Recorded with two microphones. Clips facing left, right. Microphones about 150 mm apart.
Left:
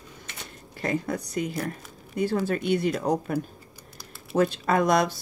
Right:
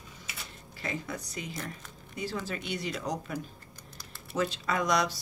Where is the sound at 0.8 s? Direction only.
50° left (ahead or behind).